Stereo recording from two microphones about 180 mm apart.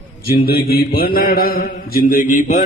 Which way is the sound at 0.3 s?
55° left (ahead or behind).